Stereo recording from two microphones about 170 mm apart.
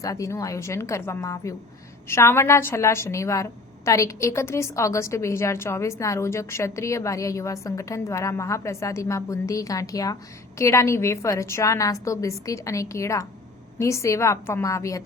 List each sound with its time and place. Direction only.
0.0 s a woman's voice: 20° left (ahead or behind)